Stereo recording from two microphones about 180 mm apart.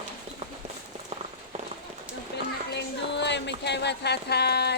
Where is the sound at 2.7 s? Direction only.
75° left (ahead or behind).